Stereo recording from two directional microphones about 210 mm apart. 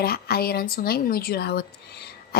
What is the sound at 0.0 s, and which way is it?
A woman's voice, 50° left (ahead or behind).